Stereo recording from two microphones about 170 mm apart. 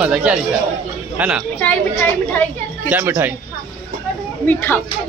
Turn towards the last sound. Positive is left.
turn(degrees=15)  # may be behind; listen again after turning